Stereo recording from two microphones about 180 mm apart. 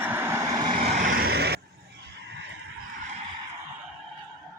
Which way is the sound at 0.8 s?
50° right (ahead or behind).